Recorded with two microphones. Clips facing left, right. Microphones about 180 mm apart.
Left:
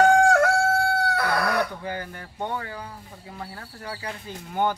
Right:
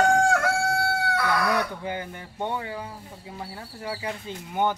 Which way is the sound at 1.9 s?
20° right (ahead or behind).